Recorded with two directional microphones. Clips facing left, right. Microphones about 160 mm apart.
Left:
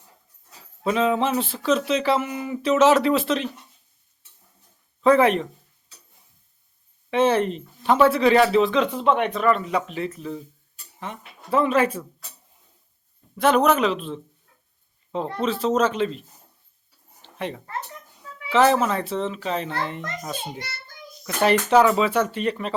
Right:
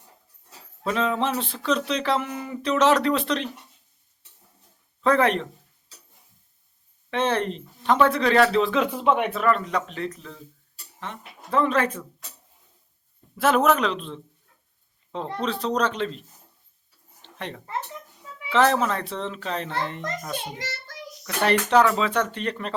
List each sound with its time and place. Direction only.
0.9 s speech: 5° left (ahead or behind)
5.0 s speech: 5° left (ahead or behind)
7.1 s speech: 5° left (ahead or behind)
8.7 s speech: 10° right (ahead or behind); by 12.0 s 10° left (ahead or behind)
13.3 s speech: centre (ahead or behind)
17.2 s a sound: 5° left (ahead or behind)
18.4 s speech: 5° left (ahead or behind)
20.6 s child singing: 90° right
21.4 s speech: 10° left (ahead or behind)